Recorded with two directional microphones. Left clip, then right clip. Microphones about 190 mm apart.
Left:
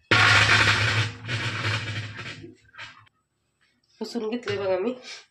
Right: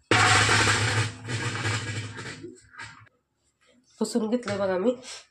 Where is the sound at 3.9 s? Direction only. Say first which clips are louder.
Right 3 dB; 40° right (ahead or behind).